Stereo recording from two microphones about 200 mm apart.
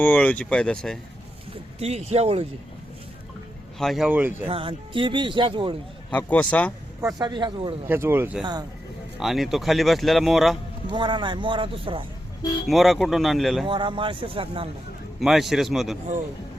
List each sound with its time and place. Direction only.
0.0 s speech: 10° left (ahead or behind)
1.8 s speech: 35° right (ahead or behind)
3.8 s speech: centre (ahead or behind)
4.4 s speech: 25° right (ahead or behind)
6.1 s speech: 5° left (ahead or behind)
7.2 s speech: 20° right (ahead or behind)
7.9 s speech: 10° right (ahead or behind)
10.8 s speech: 25° right (ahead or behind)
12.6 s speech: centre (ahead or behind)
13.7 s speech: 25° right (ahead or behind)
15.2 s speech: centre (ahead or behind)